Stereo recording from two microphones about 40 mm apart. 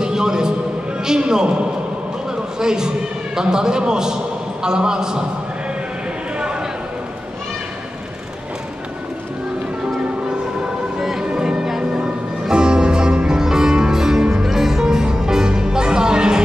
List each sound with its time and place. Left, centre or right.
0.0 s a sound: centre
1.0 s a man's voice: centre
2.3 s a sound: centre
3.3 s a man's voice: centre
11.0 s music: centre
11.2 s music: centre
12.0 s music: right